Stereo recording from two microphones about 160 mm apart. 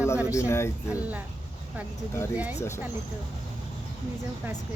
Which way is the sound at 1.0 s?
10° right (ahead or behind).